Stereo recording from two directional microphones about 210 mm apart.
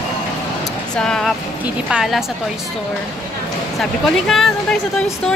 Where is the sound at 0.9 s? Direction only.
5° left (ahead or behind).